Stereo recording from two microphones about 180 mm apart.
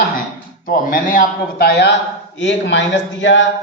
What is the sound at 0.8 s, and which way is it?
A man's voice, 50° left (ahead or behind).